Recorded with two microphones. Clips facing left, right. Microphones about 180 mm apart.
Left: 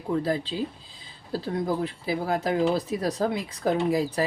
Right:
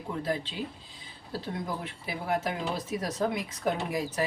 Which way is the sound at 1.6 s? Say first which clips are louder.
Left 9 dB; 35° left (ahead or behind).